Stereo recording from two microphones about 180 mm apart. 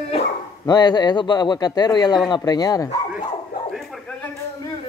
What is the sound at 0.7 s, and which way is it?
A man's voice, 20° left (ahead or behind).